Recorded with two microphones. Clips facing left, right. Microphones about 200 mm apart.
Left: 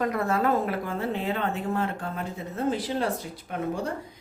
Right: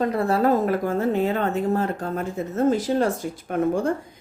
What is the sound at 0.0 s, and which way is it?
Speech, 30° right (ahead or behind).